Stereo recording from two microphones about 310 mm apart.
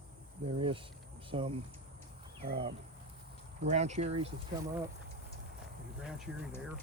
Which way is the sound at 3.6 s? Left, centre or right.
Right.